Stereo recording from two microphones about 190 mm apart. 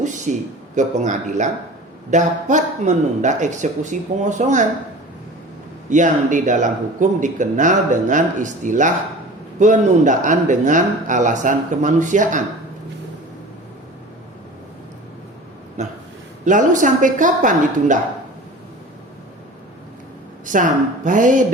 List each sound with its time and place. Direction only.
0.0 s a sound: 40° right (ahead or behind)
0.8 s speech: 40° right (ahead or behind)
5.9 s speech: 40° right (ahead or behind)
15.8 s a woman's voice: 40° right (ahead or behind)
20.4 s a woman's voice: 40° right (ahead or behind)